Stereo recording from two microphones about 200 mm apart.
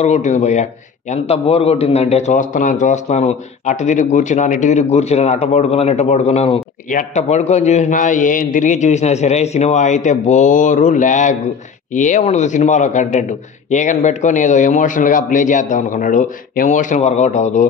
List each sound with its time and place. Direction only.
0.0 s a man's voice: 35° left (ahead or behind)